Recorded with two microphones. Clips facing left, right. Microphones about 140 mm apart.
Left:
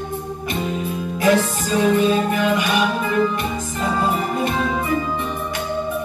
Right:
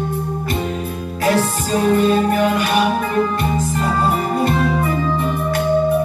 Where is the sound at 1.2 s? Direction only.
40° right (ahead or behind).